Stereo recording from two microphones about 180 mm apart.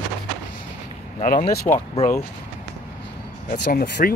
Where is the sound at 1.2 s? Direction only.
45° left (ahead or behind).